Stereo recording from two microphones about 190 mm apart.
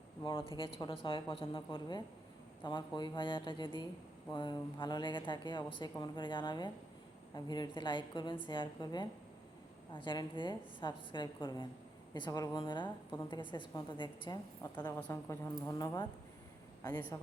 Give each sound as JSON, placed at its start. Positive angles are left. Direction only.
{"t": 0.2, "sound": "a woman's voice", "side_deg": 25}